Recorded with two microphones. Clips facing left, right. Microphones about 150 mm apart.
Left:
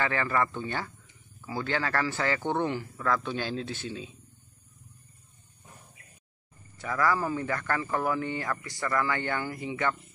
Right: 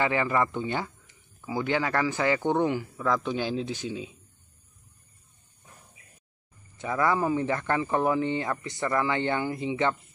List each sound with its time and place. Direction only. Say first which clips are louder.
0.0 s a man's voice: right 3 dB; 15° right (ahead or behind)
6.8 s speech: right 2 dB; 20° right (ahead or behind)